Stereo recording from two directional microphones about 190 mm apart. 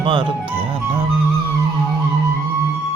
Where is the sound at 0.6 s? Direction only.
30° right (ahead or behind).